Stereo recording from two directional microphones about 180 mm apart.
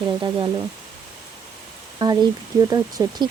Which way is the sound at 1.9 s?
25° right (ahead or behind).